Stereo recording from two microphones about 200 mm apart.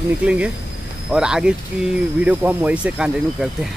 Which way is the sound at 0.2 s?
5° right (ahead or behind).